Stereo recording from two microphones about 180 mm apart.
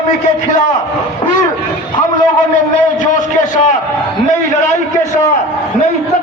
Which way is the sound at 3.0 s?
45° left (ahead or behind).